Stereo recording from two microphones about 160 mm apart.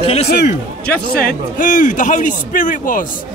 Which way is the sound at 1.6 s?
55° left (ahead or behind).